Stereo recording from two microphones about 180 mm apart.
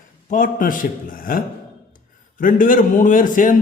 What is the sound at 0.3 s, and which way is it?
A man's voice, 45° left (ahead or behind).